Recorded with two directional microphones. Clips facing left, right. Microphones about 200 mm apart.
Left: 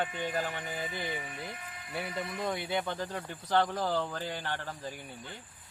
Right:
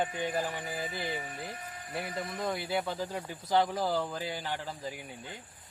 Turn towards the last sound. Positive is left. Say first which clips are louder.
# right 1 dB
turn(degrees=-10)  # may be behind; listen again after turning